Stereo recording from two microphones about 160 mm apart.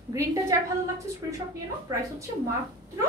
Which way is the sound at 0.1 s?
20° right (ahead or behind).